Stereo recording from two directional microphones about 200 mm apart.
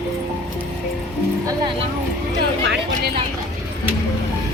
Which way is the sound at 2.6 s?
55° right (ahead or behind).